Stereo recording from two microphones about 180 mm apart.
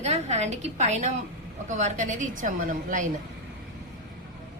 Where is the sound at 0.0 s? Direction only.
40° right (ahead or behind).